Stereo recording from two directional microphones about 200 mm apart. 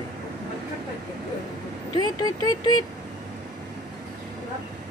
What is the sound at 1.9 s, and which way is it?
Speech, 20° left (ahead or behind).